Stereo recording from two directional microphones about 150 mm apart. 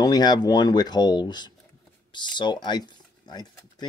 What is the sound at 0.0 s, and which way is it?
Speech, 25° left (ahead or behind).